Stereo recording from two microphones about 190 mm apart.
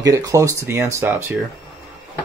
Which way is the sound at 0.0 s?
15° right (ahead or behind).